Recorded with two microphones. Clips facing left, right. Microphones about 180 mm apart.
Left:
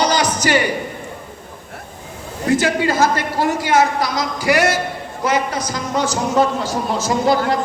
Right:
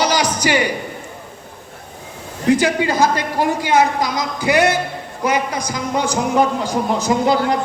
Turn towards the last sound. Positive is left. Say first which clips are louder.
# right 1 dB
turn(degrees=-15)  # may be behind; listen again after turning